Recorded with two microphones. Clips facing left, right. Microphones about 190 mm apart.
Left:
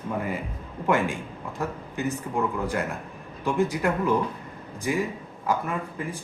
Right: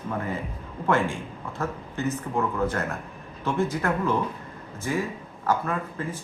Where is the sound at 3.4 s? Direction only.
15° left (ahead or behind).